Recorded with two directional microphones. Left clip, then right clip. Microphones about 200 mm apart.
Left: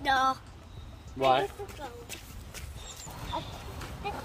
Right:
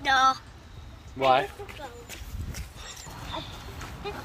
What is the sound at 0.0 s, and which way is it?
Speech, 45° left (ahead or behind).